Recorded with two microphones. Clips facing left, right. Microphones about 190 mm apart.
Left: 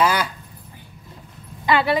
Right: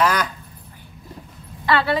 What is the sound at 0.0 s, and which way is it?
Speech, 10° left (ahead or behind).